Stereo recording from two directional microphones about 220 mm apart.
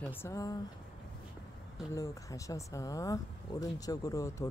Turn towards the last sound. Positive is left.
turn(degrees=15)  # may be behind; listen again after turning